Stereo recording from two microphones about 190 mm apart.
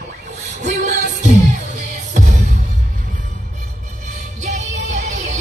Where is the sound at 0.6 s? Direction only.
40° right (ahead or behind).